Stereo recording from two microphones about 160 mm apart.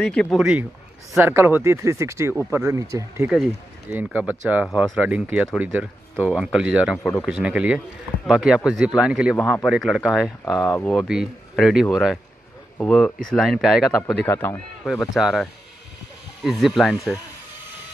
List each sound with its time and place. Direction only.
0.0 s speech: 5° left (ahead or behind)
1.1 s speech: 15° right (ahead or behind)
3.9 s speech: 5° right (ahead or behind)
9.4 s a man's voice: 10° left (ahead or behind)
9.7 s speech: centre (ahead or behind)
10.4 s speech: 25° left (ahead or behind)
10.8 s a man's voice: 10° left (ahead or behind)
14.2 s a man's voice: 15° left (ahead or behind)
14.9 s speech: 5° right (ahead or behind)
16.4 s speech: centre (ahead or behind)